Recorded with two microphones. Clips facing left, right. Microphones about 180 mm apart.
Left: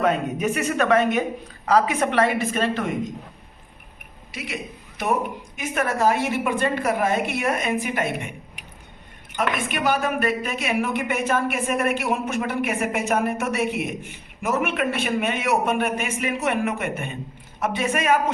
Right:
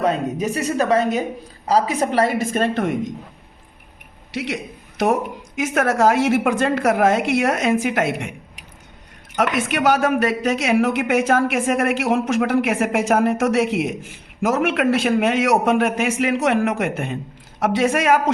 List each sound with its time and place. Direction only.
0.0 s a woman's voice: 35° right (ahead or behind); by 2.9 s 50° right (ahead or behind)
4.3 s a man's voice: 75° right (ahead or behind)
9.4 s a woman's voice: 85° right